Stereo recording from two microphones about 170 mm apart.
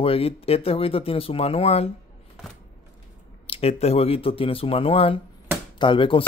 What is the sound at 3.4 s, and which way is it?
A man's voice, 35° left (ahead or behind).